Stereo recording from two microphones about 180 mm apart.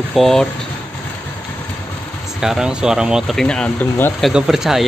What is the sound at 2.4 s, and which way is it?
Speech, 5° right (ahead or behind).